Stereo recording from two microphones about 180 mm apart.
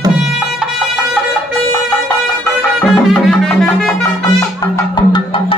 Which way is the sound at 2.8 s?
Centre (ahead or behind).